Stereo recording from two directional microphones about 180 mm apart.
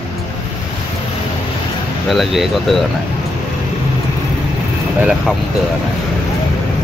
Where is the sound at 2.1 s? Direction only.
Centre (ahead or behind).